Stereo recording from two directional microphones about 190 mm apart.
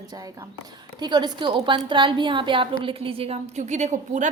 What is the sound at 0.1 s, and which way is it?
A woman's voice, 20° right (ahead or behind).